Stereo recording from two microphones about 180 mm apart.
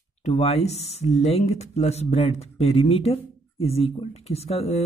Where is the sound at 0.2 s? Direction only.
35° left (ahead or behind).